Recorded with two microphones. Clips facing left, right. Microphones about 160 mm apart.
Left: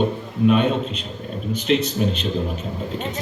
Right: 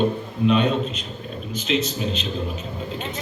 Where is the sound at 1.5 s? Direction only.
60° left (ahead or behind).